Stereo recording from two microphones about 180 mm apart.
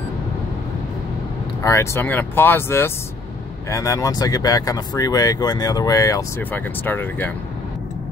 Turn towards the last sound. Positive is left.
turn(degrees=10)  # may be behind; listen again after turning